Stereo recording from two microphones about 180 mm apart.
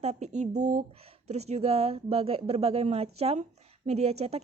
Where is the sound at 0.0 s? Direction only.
40° right (ahead or behind).